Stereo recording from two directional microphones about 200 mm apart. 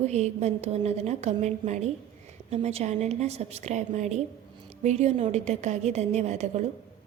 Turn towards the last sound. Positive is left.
turn(degrees=-35)  # may be behind; listen again after turning